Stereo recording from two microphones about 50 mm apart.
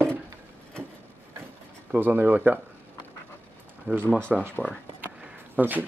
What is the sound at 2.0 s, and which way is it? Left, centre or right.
Speech, right.